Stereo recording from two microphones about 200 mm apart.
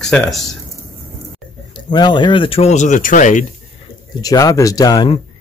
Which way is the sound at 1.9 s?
20° left (ahead or behind).